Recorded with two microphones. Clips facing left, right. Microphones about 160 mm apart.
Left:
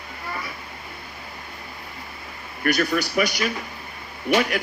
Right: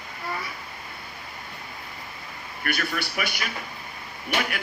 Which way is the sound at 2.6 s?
40° left (ahead or behind).